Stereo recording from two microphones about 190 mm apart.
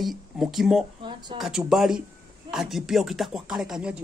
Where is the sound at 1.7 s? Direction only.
Centre (ahead or behind).